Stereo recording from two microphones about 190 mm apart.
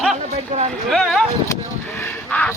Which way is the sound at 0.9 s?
Centre (ahead or behind).